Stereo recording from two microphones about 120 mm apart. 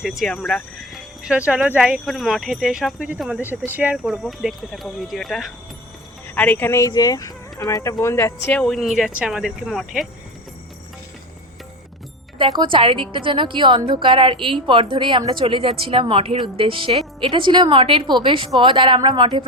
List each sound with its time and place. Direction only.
0.0 s speech: centre (ahead or behind)
3.9 s speech: centre (ahead or behind)
6.2 s speech: 15° left (ahead or behind)
8.6 s speech: centre (ahead or behind)
12.4 s a woman's voice: 45° right (ahead or behind)